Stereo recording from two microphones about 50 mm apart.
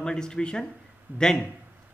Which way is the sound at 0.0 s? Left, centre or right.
Centre.